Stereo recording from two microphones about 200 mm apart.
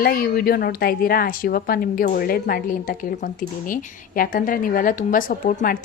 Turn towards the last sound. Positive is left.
turn(degrees=45)  # may be behind; listen again after turning